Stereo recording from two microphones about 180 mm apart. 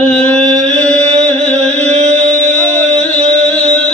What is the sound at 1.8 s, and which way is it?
Music, 40° right (ahead or behind).